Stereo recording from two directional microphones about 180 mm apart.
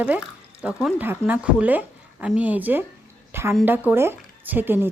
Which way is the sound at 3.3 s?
15° right (ahead or behind).